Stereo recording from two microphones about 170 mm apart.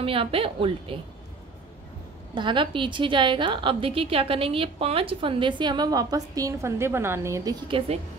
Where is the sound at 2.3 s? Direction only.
30° right (ahead or behind).